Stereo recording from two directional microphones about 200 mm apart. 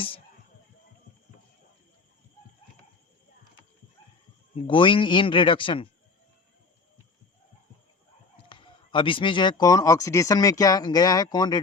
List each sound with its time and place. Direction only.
4.6 s a man's voice: 25° left (ahead or behind)
8.4 s a man's voice: 25° left (ahead or behind)